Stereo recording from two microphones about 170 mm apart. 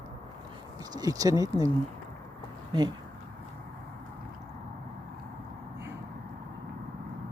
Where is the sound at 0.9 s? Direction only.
20° right (ahead or behind).